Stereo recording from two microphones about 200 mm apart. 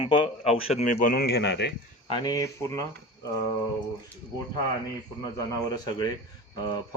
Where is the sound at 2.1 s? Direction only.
15° left (ahead or behind).